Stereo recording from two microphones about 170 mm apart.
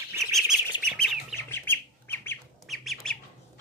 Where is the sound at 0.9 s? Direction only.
5° right (ahead or behind).